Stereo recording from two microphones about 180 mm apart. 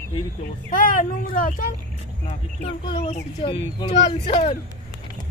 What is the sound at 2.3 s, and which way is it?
Speech, 35° left (ahead or behind).